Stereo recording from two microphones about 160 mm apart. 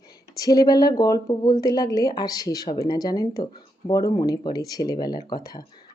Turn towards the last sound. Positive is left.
turn(degrees=25)  # may be behind; listen again after turning